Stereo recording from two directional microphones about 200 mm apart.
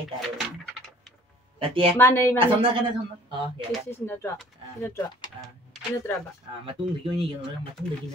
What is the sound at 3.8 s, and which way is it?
Speech, 10° left (ahead or behind).